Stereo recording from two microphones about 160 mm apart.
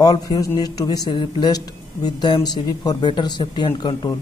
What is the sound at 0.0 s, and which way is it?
A man's voice, 25° left (ahead or behind).